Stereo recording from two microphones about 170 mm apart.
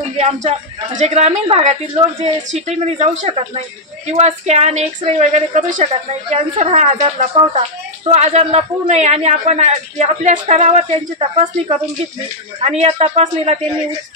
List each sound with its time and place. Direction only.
0.2 s a man's voice: 40° right (ahead or behind)
3.3 s a man's voice: 35° right (ahead or behind)
12.6 s a man's voice: 40° right (ahead or behind)